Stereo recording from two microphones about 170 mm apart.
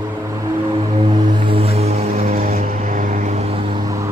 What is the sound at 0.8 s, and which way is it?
Vehicle, 30° right (ahead or behind).